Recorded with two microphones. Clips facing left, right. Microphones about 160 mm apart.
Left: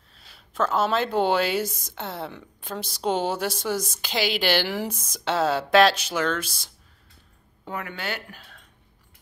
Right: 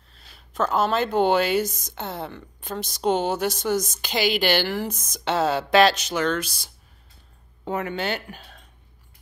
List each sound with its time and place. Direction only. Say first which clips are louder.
0.6 s a woman's voice: right 1 dB; centre (ahead or behind)
7.6 s speech: right 6 dB; 25° right (ahead or behind)